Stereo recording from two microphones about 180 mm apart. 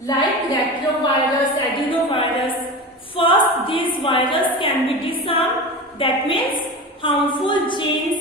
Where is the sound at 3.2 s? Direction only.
30° left (ahead or behind).